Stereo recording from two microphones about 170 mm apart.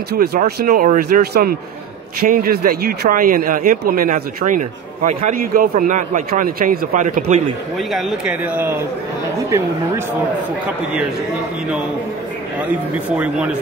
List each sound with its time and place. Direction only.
0.1 s speech: 70° right (ahead or behind)
0.6 s speech: 55° right (ahead or behind)
7.7 s a man's voice: centre (ahead or behind)
13.1 s a man's voice: 5° right (ahead or behind)